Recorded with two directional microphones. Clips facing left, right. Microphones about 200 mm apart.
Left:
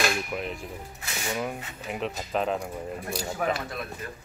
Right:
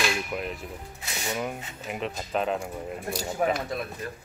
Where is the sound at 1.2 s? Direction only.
Centre (ahead or behind).